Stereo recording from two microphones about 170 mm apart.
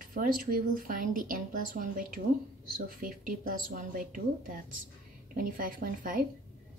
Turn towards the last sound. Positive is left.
turn(degrees=-50)  # may be behind; listen again after turning